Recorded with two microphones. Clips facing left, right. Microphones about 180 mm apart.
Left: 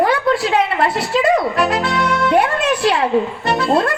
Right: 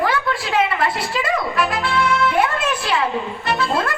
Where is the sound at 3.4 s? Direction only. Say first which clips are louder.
Left 5 dB; 40° left (ahead or behind).